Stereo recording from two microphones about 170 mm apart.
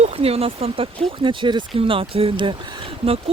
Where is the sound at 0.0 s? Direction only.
35° right (ahead or behind).